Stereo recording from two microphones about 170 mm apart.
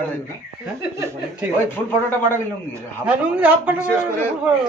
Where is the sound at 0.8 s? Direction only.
15° right (ahead or behind).